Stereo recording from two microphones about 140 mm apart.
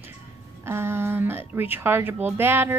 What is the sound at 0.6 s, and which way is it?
Speech, 15° right (ahead or behind).